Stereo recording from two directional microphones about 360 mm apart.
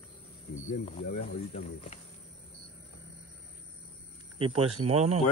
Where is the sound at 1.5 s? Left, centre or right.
Centre.